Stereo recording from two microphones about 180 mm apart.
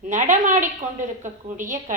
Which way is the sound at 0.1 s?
45° right (ahead or behind).